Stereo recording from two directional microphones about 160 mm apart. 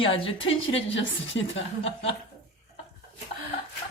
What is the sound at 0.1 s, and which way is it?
Speech, 35° left (ahead or behind).